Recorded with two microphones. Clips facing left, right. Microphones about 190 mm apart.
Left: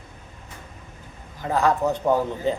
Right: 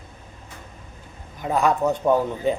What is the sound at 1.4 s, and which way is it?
Speech, 20° right (ahead or behind).